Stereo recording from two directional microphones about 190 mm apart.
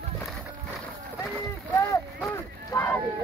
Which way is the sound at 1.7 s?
15° left (ahead or behind).